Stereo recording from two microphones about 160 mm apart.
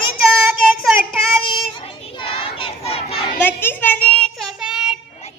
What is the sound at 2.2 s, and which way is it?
Battle cry, 35° left (ahead or behind).